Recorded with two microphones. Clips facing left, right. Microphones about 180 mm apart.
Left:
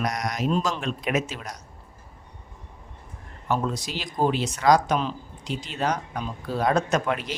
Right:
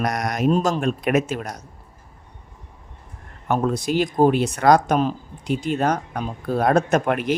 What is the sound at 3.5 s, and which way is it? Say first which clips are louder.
Speech: right 6 dB; 55° right (ahead or behind).